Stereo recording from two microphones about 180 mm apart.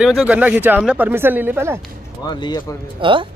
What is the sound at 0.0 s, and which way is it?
Speech, 5° right (ahead or behind).